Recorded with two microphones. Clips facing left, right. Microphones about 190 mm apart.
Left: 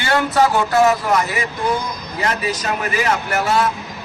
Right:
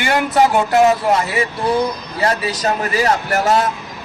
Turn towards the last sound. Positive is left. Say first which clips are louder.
# right 2 dB
turn(degrees=-40)  # may be behind; listen again after turning